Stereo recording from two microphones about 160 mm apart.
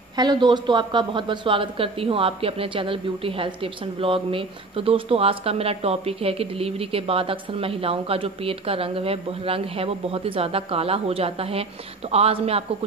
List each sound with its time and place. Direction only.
0.1 s a woman's voice: 25° right (ahead or behind)